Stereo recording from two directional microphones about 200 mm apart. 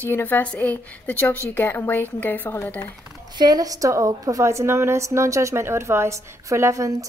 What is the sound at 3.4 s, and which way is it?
A woman's voice, 20° right (ahead or behind).